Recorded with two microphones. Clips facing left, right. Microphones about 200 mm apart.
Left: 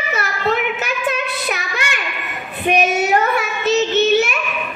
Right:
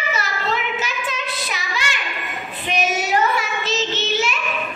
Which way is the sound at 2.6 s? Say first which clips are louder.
Left 6 dB; 60° left (ahead or behind).